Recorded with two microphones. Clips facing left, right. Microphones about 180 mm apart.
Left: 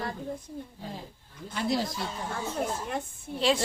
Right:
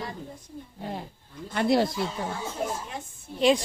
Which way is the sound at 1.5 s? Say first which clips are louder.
Right 6 dB; 60° right (ahead or behind).